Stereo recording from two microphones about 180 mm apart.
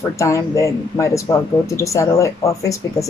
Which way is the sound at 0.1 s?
15° left (ahead or behind).